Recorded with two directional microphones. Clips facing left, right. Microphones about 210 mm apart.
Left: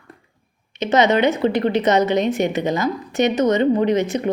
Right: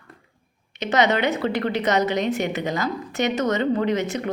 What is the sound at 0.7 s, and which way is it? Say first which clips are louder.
A woman's voice: left 4 dB; 20° left (ahead or behind).